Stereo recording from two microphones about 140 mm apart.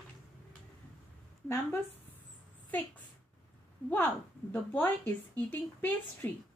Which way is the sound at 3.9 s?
15° left (ahead or behind).